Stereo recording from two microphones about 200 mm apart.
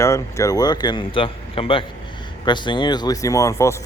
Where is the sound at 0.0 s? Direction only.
15° left (ahead or behind).